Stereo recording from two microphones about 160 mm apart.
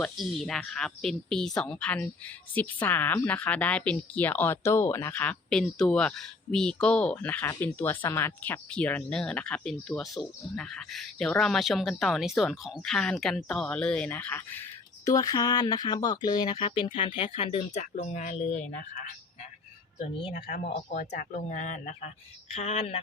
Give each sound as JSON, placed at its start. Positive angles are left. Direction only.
{"t": 0.0, "sound": "speech", "side_deg": 0}
{"t": 17.9, "sound": "speech", "side_deg": 50}
{"t": 20.3, "sound": "speech", "side_deg": 50}